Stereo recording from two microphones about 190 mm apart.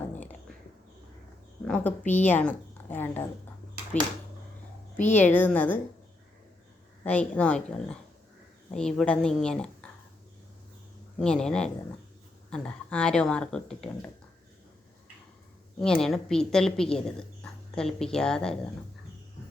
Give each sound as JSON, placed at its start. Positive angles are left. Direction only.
{"t": 0.1, "sound": "a sound", "side_deg": 10}
{"t": 1.6, "sound": "a woman's voice", "side_deg": 5}
{"t": 3.9, "sound": "speech", "side_deg": 40}
{"t": 4.9, "sound": "a woman's voice", "side_deg": 10}
{"t": 7.0, "sound": "a woman's voice", "side_deg": 10}
{"t": 11.2, "sound": "a woman's voice", "side_deg": 5}
{"t": 15.8, "sound": "a woman's voice", "side_deg": 5}